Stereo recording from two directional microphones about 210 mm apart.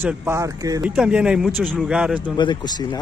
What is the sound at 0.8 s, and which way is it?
Speech, 5° right (ahead or behind).